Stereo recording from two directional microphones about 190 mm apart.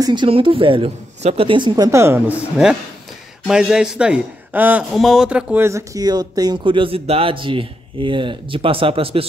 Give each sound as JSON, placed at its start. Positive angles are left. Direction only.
{"t": 0.0, "sound": "speech", "side_deg": -25}
{"t": 2.5, "sound": "a man's voice", "side_deg": -5}